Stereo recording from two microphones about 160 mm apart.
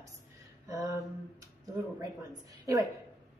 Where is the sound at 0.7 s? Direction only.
20° right (ahead or behind).